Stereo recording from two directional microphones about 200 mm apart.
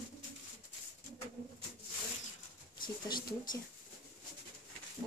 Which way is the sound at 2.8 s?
20° left (ahead or behind).